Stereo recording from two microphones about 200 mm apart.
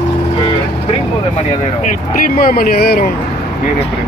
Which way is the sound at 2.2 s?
45° left (ahead or behind).